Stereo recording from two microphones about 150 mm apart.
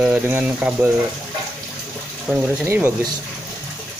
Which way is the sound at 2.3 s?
5° right (ahead or behind).